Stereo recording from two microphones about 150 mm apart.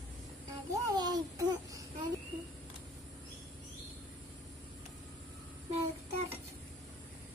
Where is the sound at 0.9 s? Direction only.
30° right (ahead or behind).